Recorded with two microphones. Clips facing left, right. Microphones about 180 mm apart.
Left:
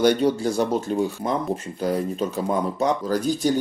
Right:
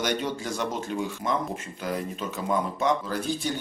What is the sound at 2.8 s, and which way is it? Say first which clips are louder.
Speech: left 4 dB; 40° left (ahead or behind).